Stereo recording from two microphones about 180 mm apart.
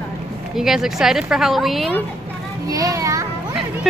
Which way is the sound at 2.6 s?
20° right (ahead or behind).